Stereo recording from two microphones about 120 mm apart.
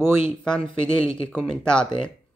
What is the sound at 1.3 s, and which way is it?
Speech, 5° left (ahead or behind).